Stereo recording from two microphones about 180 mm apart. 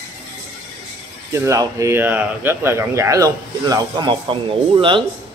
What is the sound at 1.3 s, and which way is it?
Speech, 15° right (ahead or behind).